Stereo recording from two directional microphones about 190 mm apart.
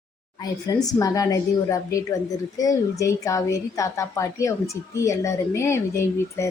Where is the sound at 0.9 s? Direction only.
15° left (ahead or behind).